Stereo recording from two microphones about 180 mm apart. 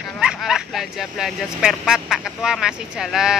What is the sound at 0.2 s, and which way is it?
Speech, 5° right (ahead or behind).